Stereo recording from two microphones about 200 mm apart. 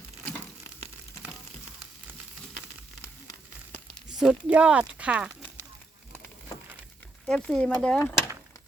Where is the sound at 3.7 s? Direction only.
Centre (ahead or behind).